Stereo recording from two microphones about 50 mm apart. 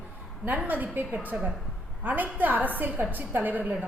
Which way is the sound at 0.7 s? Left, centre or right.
Right.